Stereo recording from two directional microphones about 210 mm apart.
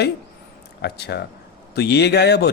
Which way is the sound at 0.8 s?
50° left (ahead or behind).